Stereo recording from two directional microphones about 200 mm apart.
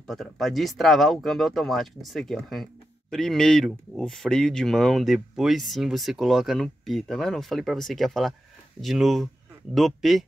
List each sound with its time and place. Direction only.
0.0 s speech: centre (ahead or behind)